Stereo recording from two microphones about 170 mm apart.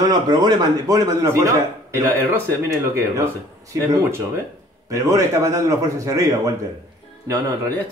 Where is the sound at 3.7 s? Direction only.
15° right (ahead or behind).